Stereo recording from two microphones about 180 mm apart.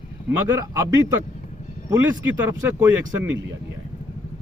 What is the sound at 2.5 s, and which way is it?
Speech, 10° right (ahead or behind).